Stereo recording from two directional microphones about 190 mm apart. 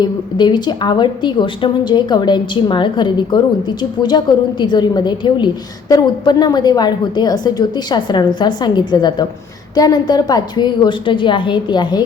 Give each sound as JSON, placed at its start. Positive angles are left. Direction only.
{"t": 0.0, "sound": "a woman's voice", "side_deg": 25}